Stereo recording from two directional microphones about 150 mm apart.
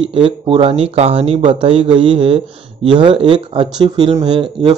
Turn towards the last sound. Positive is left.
turn(degrees=-35)  # may be behind; listen again after turning